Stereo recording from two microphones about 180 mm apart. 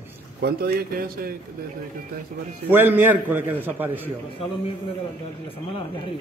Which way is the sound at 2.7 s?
10° right (ahead or behind).